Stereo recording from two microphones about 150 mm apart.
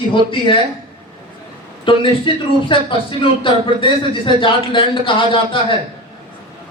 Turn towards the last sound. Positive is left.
turn(degrees=35)  # may be behind; listen again after turning